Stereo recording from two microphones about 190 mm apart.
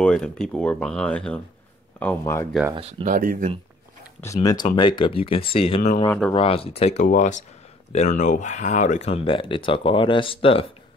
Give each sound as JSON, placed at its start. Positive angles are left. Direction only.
{"t": 0.0, "sound": "speech", "side_deg": 5}
{"t": 2.7, "sound": "speech", "side_deg": -30}
{"t": 3.1, "sound": "speech", "side_deg": -45}
{"t": 4.2, "sound": "speech", "side_deg": 15}